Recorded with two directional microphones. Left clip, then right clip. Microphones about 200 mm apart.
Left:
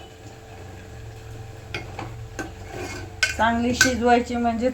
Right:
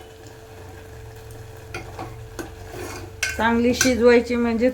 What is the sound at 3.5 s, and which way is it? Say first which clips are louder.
A woman's voice: right 1 dB; 30° right (ahead or behind).